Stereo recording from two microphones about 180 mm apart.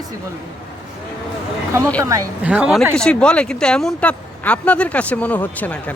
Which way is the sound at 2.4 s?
5° right (ahead or behind).